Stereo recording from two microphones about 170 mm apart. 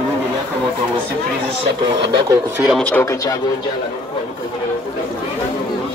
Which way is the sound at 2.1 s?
20° right (ahead or behind).